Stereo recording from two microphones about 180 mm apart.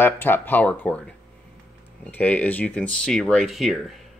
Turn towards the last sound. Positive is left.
turn(degrees=0)  # may be behind; listen again after turning